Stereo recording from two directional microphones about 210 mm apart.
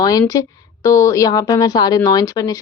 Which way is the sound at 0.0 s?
15° left (ahead or behind).